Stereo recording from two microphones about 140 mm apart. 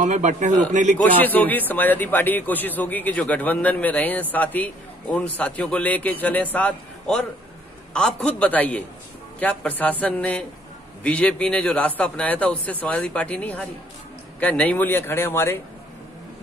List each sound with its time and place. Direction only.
0.0 s a man's voice: 60° right (ahead or behind)
0.9 s speech: 10° left (ahead or behind)